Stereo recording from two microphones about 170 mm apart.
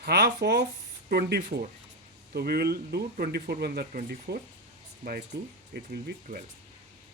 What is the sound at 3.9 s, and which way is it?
Speech, 60° right (ahead or behind).